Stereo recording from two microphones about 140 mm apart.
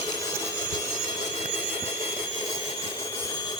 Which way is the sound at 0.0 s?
35° left (ahead or behind).